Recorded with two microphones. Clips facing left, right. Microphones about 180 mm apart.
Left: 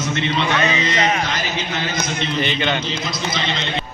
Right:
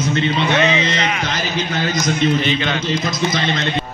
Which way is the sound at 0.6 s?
40° left (ahead or behind).